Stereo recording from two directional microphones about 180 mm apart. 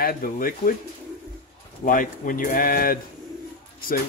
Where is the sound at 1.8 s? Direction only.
50° left (ahead or behind).